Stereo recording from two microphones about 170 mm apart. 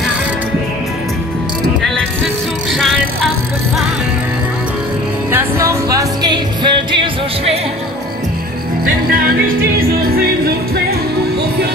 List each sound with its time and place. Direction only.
5.3 s music: 15° right (ahead or behind)